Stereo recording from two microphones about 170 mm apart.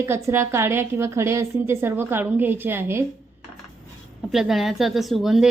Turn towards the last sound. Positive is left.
turn(degrees=0)  # may be behind; listen again after turning